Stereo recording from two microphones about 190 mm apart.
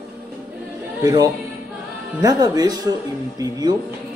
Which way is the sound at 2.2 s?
20° right (ahead or behind).